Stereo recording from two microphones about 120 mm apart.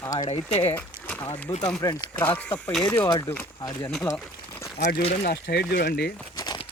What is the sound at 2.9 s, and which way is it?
Speech, 30° left (ahead or behind).